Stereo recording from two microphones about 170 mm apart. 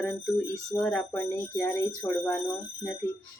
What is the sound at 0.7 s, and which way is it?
Speech, 10° left (ahead or behind).